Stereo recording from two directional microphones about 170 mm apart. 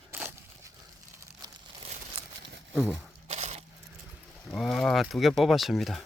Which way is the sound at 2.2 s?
35° right (ahead or behind).